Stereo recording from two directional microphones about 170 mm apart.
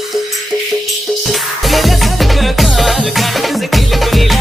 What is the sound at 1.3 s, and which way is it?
Music, centre (ahead or behind).